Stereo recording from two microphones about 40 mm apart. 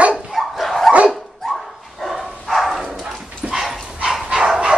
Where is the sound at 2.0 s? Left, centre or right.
Centre.